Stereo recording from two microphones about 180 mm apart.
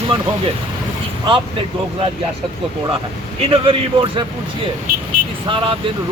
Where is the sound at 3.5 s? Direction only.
30° right (ahead or behind).